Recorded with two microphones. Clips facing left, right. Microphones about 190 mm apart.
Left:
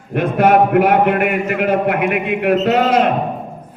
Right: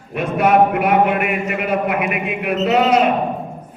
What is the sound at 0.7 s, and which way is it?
Speech, 55° left (ahead or behind).